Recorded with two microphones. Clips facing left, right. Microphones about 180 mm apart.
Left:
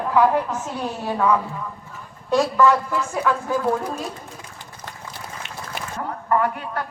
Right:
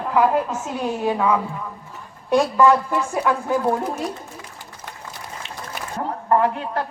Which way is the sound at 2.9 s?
15° right (ahead or behind).